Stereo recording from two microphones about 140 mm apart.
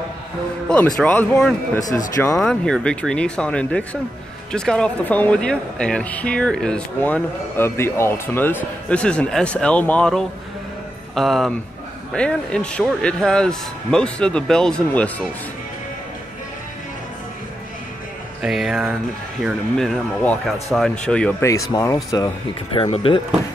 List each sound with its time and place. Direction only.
0.7 s speech: 10° left (ahead or behind)
18.4 s speech: 5° right (ahead or behind)
21.6 s speech: 25° left (ahead or behind)
22.8 s speech: 40° left (ahead or behind)